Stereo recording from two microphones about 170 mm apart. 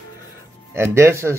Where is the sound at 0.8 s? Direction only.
15° right (ahead or behind).